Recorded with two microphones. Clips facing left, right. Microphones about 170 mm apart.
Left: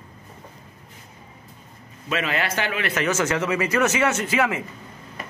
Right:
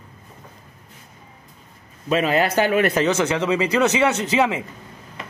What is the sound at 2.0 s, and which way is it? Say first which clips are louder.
Speech: right 6 dB; 35° right (ahead or behind).